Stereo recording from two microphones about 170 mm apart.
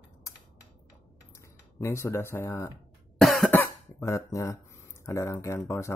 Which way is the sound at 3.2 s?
Centre (ahead or behind).